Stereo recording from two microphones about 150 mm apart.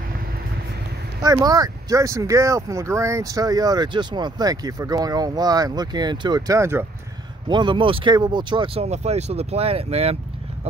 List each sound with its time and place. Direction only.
1.2 s speech: 25° right (ahead or behind)
7.4 s speech: 30° right (ahead or behind)
8.8 s speech: 45° right (ahead or behind)